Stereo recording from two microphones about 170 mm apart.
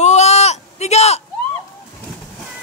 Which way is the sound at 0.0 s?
40° left (ahead or behind).